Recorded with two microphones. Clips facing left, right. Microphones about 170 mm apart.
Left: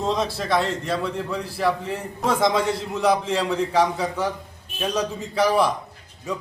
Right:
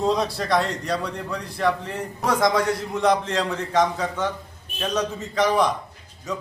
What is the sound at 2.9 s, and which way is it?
A man's voice, 5° left (ahead or behind).